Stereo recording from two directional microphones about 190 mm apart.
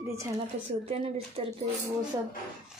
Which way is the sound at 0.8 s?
30° right (ahead or behind).